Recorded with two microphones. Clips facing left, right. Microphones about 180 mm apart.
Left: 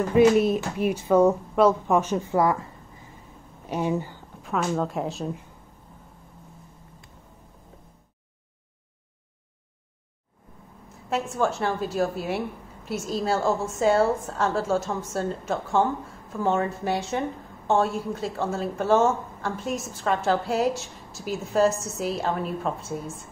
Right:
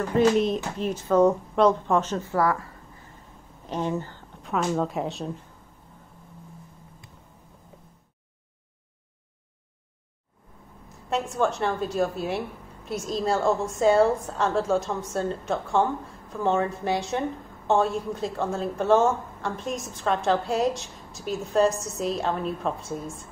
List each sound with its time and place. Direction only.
0.1 s speech: 10° left (ahead or behind)
3.6 s a sound: 10° left (ahead or behind)
4.5 s a woman's voice: centre (ahead or behind)
11.1 s a woman's voice: 5° left (ahead or behind)